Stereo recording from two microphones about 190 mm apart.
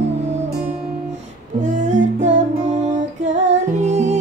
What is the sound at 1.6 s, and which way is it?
Music, 40° right (ahead or behind).